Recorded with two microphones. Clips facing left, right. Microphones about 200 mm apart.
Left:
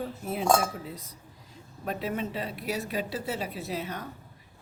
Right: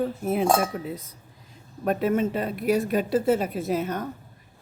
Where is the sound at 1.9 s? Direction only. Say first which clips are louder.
Right 9 dB; 50° right (ahead or behind).